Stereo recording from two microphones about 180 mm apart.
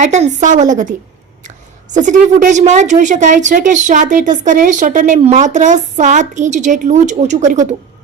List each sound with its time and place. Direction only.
0.0 s a woman's voice: 40° right (ahead or behind)